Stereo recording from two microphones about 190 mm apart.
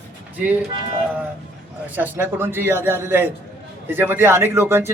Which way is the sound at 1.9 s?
10° right (ahead or behind).